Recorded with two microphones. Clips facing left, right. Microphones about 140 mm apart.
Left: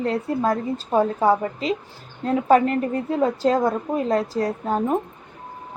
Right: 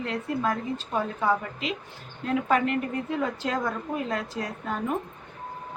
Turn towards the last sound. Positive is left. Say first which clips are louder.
# left 8 dB
turn(degrees=35)  # may be behind; listen again after turning